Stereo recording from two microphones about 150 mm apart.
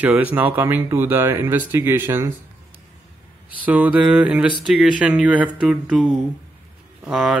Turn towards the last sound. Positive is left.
turn(degrees=-5)  # may be behind; listen again after turning